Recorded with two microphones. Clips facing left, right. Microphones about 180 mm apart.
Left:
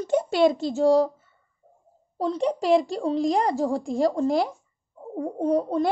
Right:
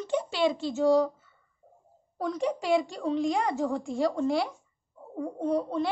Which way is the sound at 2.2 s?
30° left (ahead or behind).